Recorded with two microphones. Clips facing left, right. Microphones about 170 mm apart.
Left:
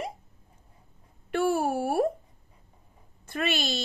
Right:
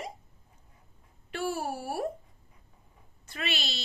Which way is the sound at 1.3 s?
55° left (ahead or behind).